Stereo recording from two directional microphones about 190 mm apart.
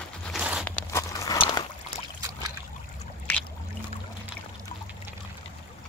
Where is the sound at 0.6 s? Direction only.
10° left (ahead or behind).